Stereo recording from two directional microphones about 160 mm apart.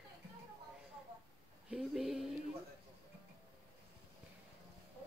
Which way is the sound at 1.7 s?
Centre (ahead or behind).